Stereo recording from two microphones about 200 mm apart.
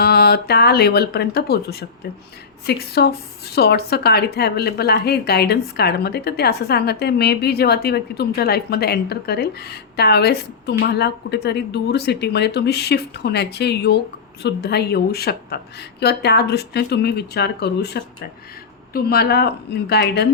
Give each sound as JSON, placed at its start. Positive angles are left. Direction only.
{"t": 0.0, "sound": "a woman's voice", "side_deg": 50}